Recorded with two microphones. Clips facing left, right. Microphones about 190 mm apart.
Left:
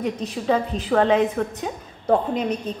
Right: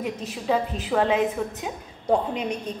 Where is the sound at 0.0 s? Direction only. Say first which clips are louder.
Left 4 dB; 5° right (ahead or behind).